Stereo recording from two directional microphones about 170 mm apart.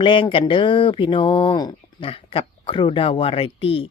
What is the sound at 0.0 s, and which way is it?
Speech, 30° left (ahead or behind).